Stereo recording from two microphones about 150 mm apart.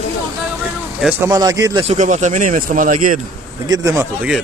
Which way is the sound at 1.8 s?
50° right (ahead or behind).